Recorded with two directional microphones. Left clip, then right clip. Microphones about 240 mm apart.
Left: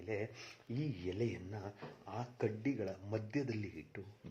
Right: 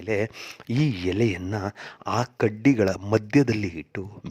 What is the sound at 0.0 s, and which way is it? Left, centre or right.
Speech, right.